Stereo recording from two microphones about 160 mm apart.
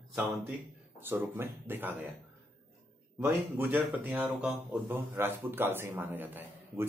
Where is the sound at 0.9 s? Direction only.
15° right (ahead or behind).